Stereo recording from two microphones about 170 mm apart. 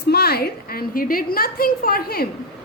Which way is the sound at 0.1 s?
65° left (ahead or behind).